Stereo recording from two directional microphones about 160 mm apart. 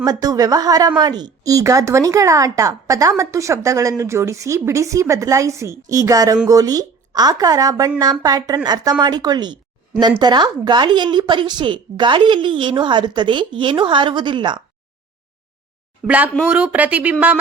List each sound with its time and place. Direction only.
0.0 s speech: 25° right (ahead or behind)
16.0 s speech: 10° right (ahead or behind)